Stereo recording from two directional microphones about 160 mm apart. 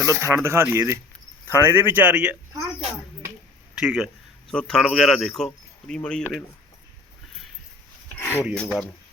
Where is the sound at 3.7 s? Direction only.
5° right (ahead or behind).